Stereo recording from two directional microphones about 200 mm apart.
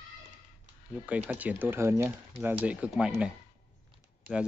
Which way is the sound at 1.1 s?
5° right (ahead or behind).